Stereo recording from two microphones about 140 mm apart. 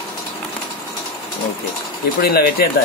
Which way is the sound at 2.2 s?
90° left.